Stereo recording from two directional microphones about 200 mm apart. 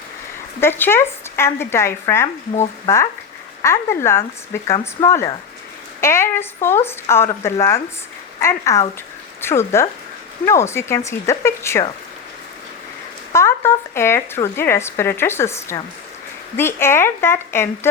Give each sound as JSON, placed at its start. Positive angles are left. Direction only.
{"t": 0.6, "sound": "speech", "side_deg": 10}
{"t": 13.3, "sound": "speech", "side_deg": 15}